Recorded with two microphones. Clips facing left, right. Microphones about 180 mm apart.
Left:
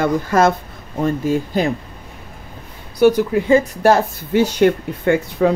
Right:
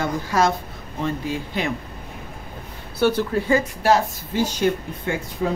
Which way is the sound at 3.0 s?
15° left (ahead or behind).